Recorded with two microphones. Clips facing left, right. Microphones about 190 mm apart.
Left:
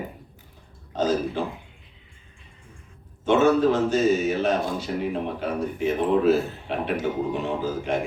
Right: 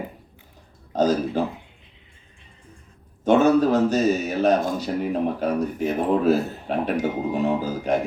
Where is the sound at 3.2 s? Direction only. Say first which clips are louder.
Right 2 dB; 40° right (ahead or behind).